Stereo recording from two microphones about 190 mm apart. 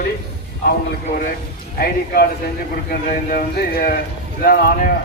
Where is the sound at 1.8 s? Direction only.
50° left (ahead or behind).